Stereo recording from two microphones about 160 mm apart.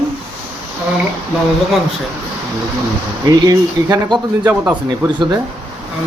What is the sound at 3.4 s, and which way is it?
A man's voice, 25° right (ahead or behind).